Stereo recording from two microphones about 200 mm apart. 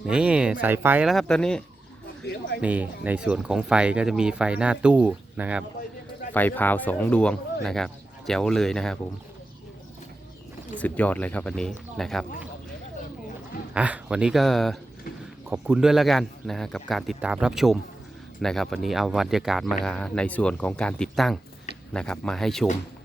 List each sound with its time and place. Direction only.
0.1 s speech: 5° right (ahead or behind)
2.2 s speech: 55° left (ahead or behind)
2.6 s speech: 5° right (ahead or behind)
6.3 s speech: 10° left (ahead or behind)
10.8 s speech: 5° left (ahead or behind)
13.7 s speech: 5° right (ahead or behind)